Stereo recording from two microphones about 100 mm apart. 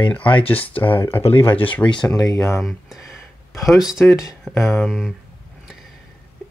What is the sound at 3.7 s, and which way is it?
Speech, 5° right (ahead or behind).